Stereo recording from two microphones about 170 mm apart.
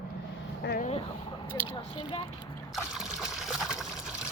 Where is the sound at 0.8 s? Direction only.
40° left (ahead or behind).